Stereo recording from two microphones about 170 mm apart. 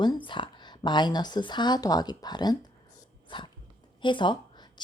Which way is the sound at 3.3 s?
30° left (ahead or behind).